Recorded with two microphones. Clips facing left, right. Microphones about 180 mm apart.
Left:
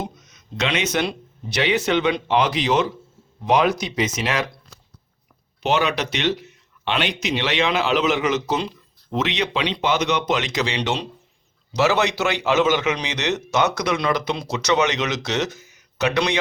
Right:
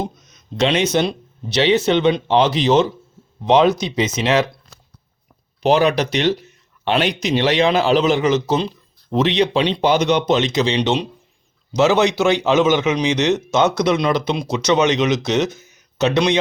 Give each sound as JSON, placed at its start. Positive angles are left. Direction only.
{"t": 0.5, "sound": "a man's voice", "side_deg": -35}
{"t": 5.6, "sound": "a man's voice", "side_deg": -35}